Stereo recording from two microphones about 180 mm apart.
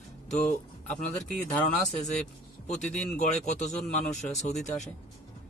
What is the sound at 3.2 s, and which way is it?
Speech, 40° left (ahead or behind).